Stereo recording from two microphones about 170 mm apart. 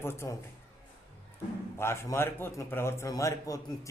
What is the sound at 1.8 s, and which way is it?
A man's voice, 15° left (ahead or behind).